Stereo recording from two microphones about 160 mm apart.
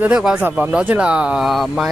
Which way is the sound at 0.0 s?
5° right (ahead or behind).